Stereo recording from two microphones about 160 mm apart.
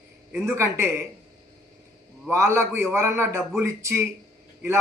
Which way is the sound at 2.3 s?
15° right (ahead or behind).